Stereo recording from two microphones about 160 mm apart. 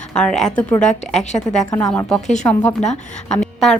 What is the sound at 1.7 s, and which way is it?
A woman's voice, 5° left (ahead or behind).